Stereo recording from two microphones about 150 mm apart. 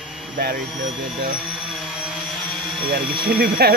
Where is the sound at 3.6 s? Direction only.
90° right.